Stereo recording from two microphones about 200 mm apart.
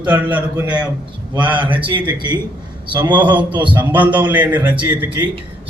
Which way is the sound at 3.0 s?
20° right (ahead or behind).